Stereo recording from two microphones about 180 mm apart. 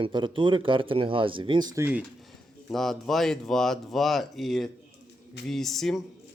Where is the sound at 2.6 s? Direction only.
Centre (ahead or behind).